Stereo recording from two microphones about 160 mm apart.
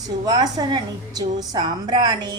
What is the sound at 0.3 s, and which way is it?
A woman's voice, 25° right (ahead or behind).